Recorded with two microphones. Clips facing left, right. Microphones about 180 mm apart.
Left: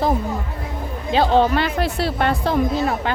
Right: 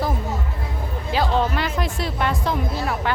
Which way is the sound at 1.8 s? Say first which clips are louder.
Left 4 dB; 70° left (ahead or behind).